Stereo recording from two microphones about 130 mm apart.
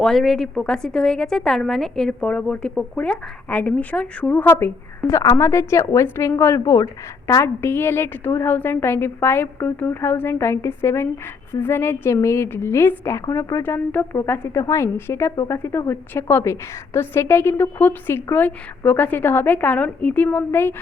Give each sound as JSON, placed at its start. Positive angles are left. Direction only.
{"t": 0.0, "sound": "a woman's voice", "side_deg": 0}